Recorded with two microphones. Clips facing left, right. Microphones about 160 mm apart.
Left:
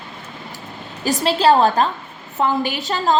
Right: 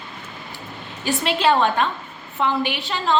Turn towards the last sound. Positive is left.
turn(degrees=40)  # may be behind; listen again after turning